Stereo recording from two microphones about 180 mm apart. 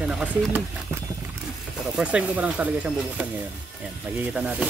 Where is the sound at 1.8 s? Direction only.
5° right (ahead or behind).